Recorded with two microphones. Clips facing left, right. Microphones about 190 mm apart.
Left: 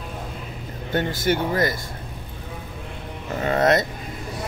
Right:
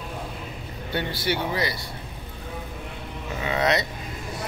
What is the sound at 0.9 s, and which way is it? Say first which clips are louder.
Speech: left 5 dB; 45° left (ahead or behind).